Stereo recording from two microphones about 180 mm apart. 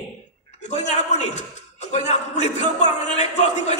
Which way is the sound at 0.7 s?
40° left (ahead or behind).